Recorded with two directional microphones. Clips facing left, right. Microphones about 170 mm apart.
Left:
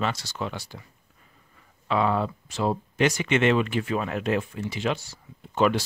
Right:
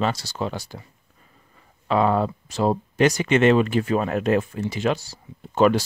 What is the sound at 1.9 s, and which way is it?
Speech, 40° right (ahead or behind).